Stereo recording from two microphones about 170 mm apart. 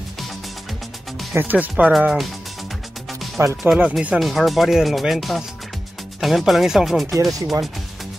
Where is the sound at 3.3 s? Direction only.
15° right (ahead or behind).